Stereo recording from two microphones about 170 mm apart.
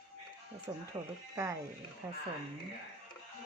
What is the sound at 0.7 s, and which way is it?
Speech, 15° right (ahead or behind).